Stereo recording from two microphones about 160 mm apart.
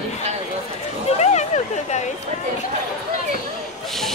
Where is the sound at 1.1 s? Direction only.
45° left (ahead or behind).